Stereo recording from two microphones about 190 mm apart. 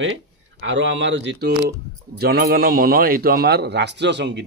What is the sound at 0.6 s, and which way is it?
Speech, 70° right (ahead or behind).